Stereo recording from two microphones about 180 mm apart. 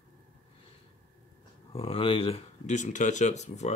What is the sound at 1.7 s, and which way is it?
Speech, 30° left (ahead or behind).